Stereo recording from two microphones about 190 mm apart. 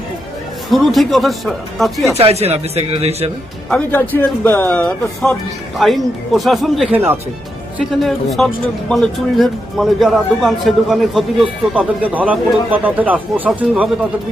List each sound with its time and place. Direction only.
0.7 s speech: centre (ahead or behind)
2.1 s speech: 35° right (ahead or behind)
3.7 s speech: 5° left (ahead or behind)